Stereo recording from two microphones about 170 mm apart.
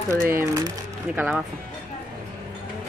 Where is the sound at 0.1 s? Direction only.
15° right (ahead or behind).